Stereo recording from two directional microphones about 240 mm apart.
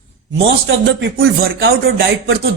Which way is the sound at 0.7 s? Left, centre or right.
Right.